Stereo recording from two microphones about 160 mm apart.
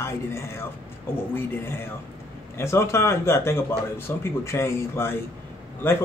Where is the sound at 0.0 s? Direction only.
15° left (ahead or behind).